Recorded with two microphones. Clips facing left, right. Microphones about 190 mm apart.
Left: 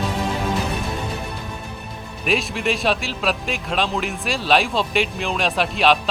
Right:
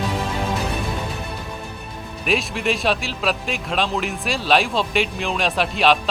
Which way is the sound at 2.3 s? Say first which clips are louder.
Even; centre (ahead or behind).